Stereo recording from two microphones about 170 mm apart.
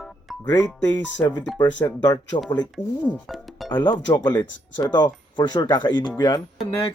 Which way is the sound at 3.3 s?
Centre (ahead or behind).